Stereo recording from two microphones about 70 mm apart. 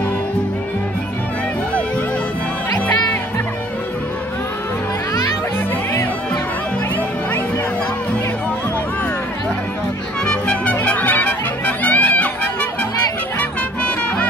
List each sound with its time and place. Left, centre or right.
10.2 s music: centre
13.4 s music: centre